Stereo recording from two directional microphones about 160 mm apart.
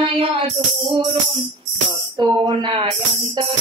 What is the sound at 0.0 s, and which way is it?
Music, 30° right (ahead or behind).